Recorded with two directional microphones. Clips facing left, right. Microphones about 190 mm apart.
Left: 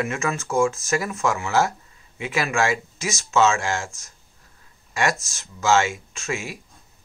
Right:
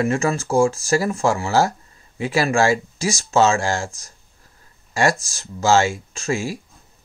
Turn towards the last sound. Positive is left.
turn(degrees=-30)  # may be behind; listen again after turning